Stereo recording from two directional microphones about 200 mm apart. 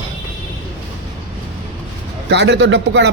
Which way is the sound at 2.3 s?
60° right (ahead or behind).